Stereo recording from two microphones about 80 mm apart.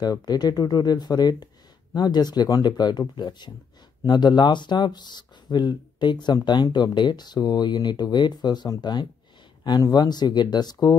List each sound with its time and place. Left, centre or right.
0.0 s speech: left
9.7 s speech: left